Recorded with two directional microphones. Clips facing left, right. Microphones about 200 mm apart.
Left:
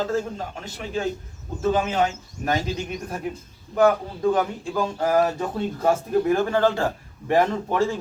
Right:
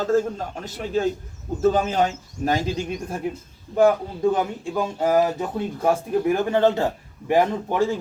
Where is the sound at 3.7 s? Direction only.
25° right (ahead or behind).